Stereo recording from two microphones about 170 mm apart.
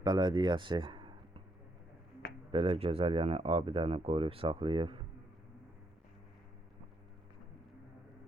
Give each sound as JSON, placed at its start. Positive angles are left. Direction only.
{"t": 0.0, "sound": "speech", "side_deg": -25}
{"t": 2.5, "sound": "speech", "side_deg": -30}